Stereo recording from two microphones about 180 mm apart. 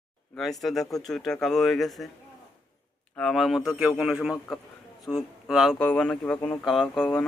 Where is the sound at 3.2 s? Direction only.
Centre (ahead or behind).